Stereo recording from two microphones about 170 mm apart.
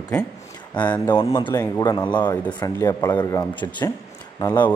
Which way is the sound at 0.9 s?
25° left (ahead or behind).